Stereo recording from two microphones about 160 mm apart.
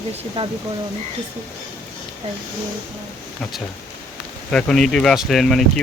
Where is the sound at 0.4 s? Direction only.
35° right (ahead or behind).